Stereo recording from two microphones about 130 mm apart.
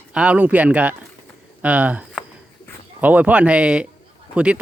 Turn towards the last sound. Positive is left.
turn(degrees=-10)  # may be behind; listen again after turning